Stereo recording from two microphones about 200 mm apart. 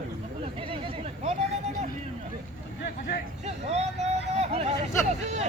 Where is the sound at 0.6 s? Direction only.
25° right (ahead or behind).